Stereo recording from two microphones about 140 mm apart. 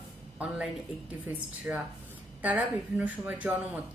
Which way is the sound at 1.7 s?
10° right (ahead or behind).